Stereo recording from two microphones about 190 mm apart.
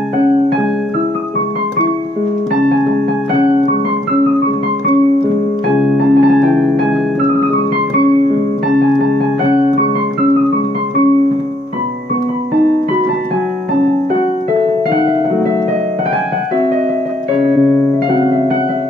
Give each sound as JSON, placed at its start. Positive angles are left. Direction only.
{"t": 5.8, "sound": "keyboard", "side_deg": 0}
{"t": 18.1, "sound": "piano", "side_deg": 25}